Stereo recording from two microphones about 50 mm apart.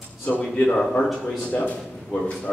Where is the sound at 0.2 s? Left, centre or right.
Left.